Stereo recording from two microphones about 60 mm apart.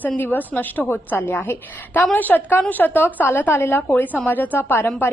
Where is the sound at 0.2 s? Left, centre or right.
Left.